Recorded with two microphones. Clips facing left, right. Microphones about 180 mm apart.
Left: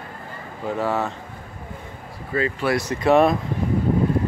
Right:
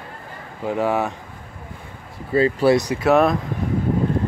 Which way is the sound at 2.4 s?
30° right (ahead or behind).